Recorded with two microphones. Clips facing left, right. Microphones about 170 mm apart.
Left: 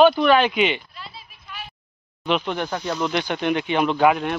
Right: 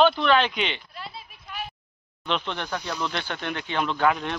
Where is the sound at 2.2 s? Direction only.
10° left (ahead or behind).